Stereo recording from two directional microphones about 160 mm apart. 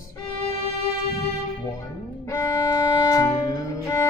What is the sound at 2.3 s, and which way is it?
Music, 25° left (ahead or behind).